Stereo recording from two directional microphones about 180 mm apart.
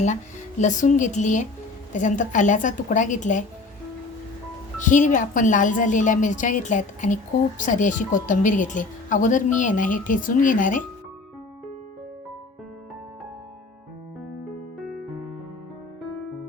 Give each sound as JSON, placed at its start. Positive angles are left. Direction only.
{"t": 0.6, "sound": "speech", "side_deg": 45}
{"t": 4.8, "sound": "speech", "side_deg": 45}
{"t": 14.8, "sound": "music", "side_deg": 0}